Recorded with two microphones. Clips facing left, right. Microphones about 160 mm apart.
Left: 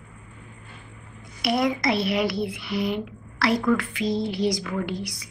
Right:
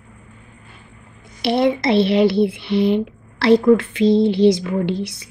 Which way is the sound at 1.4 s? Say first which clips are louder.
Right 6 dB; 30° right (ahead or behind).